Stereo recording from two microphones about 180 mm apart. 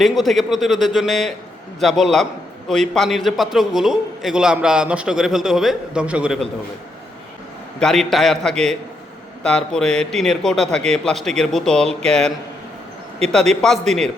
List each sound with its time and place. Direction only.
0.0 s a man's voice: centre (ahead or behind)
7.8 s a man's voice: centre (ahead or behind)
13.6 s a man's voice: centre (ahead or behind)